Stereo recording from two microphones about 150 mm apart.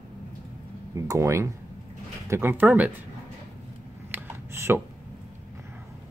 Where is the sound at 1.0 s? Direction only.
20° right (ahead or behind).